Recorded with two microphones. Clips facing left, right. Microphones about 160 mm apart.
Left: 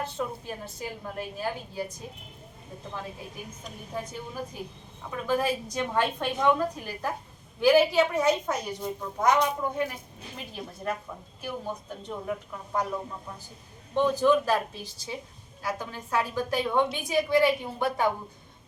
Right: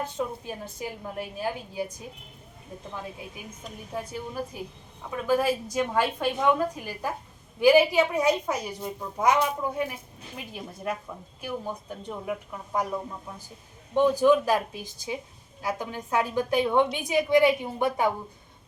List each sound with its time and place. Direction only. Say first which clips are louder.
0.0 s a woman's voice: right 2 dB; 10° right (ahead or behind)
3.6 s a woman's voice: right 2 dB; 5° right (ahead or behind)